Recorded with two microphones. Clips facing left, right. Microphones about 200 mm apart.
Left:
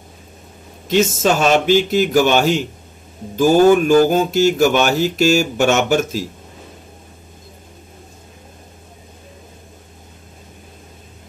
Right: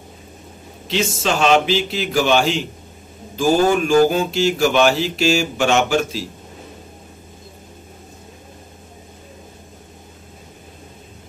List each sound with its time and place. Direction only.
0.8 s speech: 45° left (ahead or behind)